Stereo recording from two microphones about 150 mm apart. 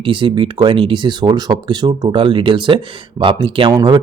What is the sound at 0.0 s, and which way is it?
Speech, 35° right (ahead or behind).